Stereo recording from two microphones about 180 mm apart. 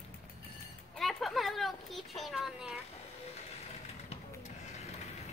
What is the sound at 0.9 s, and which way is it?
Speech, centre (ahead or behind).